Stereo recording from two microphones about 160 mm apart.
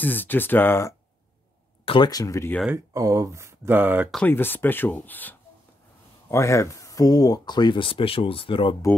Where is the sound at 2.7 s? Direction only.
20° right (ahead or behind).